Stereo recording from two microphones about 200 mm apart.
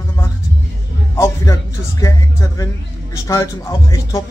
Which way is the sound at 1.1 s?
15° left (ahead or behind).